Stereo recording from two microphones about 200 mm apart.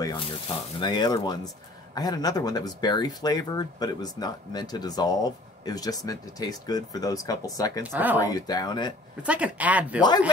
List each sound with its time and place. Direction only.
0.7 s speech: 20° left (ahead or behind)
7.8 s speech: 10° right (ahead or behind)
8.2 s speech: 20° left (ahead or behind)
9.2 s speech: 5° right (ahead or behind)
10.0 s speech: 20° left (ahead or behind)